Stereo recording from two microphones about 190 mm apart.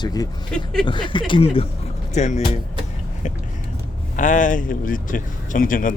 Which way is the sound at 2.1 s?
40° left (ahead or behind).